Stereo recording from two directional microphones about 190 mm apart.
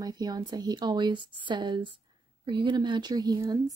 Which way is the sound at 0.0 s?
20° right (ahead or behind).